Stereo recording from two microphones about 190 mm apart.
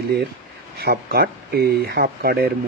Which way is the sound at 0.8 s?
50° right (ahead or behind).